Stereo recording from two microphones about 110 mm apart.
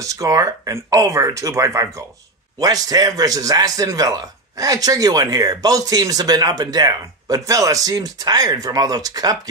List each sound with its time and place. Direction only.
0.0 s a man's voice: 30° right (ahead or behind)